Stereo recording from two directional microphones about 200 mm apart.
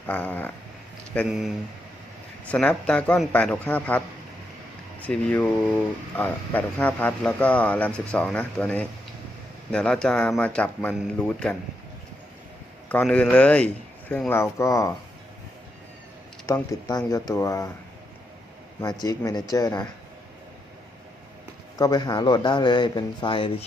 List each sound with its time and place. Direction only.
0.1 s a man's voice: 10° left (ahead or behind)
12.9 s a man's voice: 5° left (ahead or behind)
16.5 s a man's voice: 15° left (ahead or behind)
19.0 s a man's voice: 15° left (ahead or behind)
21.8 s speech: 20° left (ahead or behind)